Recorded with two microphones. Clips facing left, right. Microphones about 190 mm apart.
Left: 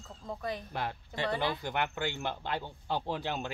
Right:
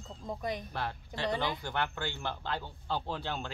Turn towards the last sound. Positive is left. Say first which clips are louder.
# left 2 dB
turn(degrees=15)  # may be behind; listen again after turning